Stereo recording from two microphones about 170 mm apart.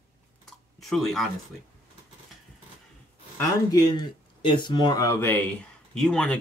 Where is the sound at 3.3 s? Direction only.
20° left (ahead or behind).